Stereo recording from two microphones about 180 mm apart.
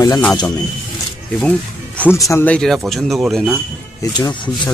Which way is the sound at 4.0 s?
25° left (ahead or behind).